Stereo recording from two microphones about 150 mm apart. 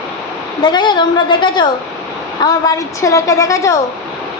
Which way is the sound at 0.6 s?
30° left (ahead or behind).